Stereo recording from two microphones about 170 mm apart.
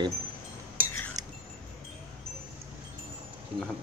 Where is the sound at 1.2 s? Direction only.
20° right (ahead or behind).